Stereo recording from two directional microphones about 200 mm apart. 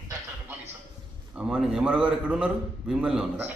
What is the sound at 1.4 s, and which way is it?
A man's voice, 5° right (ahead or behind).